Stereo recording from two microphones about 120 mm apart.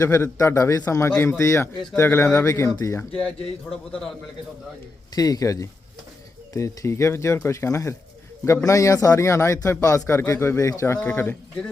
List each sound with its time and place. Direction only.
0.0 s a man's voice: 25° left (ahead or behind)
3.0 s a man's voice: 10° left (ahead or behind)
5.1 s a man's voice: 30° left (ahead or behind)